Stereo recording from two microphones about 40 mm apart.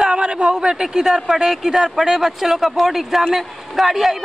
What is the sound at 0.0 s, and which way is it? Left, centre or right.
A man's voice, right.